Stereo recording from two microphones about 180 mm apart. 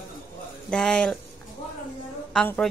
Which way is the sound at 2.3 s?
5° left (ahead or behind).